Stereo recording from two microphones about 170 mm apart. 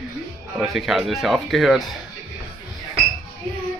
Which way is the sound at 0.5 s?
Centre (ahead or behind).